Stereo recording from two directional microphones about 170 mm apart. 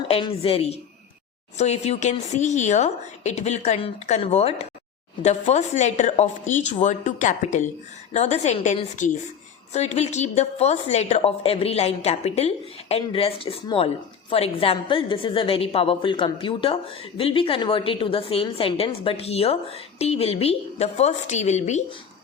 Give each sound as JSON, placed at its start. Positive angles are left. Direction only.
{"t": 0.1, "sound": "a woman's voice", "side_deg": 35}